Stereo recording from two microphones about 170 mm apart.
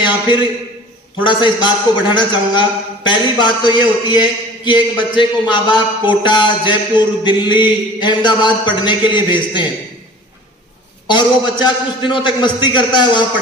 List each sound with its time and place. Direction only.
0.0 s a man's voice: 25° left (ahead or behind)
11.1 s a man's voice: 25° left (ahead or behind)